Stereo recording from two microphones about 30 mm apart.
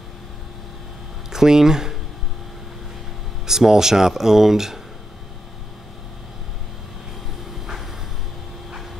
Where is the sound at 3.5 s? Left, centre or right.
Centre.